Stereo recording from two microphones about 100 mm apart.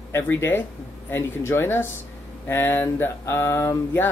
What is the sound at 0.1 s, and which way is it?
Speech, 25° left (ahead or behind).